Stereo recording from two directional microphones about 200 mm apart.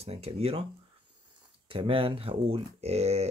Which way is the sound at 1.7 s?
25° right (ahead or behind).